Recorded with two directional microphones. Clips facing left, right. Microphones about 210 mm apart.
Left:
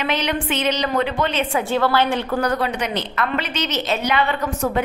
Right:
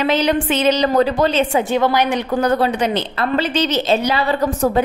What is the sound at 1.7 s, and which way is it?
A woman's voice, 15° right (ahead or behind).